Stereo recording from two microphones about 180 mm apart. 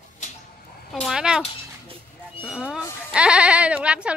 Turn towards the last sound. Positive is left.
turn(degrees=-5)  # may be behind; listen again after turning